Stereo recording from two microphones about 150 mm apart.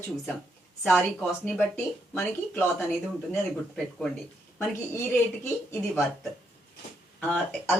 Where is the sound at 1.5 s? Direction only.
15° left (ahead or behind).